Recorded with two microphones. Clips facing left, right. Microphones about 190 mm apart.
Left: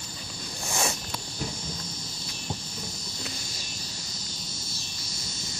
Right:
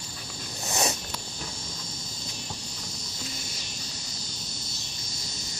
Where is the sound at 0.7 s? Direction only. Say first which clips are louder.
Right 1 dB; 20° right (ahead or behind).